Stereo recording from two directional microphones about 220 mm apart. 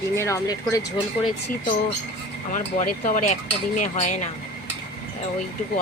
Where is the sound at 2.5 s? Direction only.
35° left (ahead or behind).